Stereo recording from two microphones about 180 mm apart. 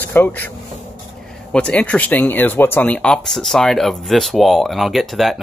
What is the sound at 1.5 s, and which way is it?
Speech, 5° left (ahead or behind).